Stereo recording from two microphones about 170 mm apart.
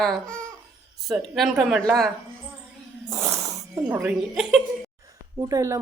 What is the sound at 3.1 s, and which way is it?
Speech, 15° right (ahead or behind).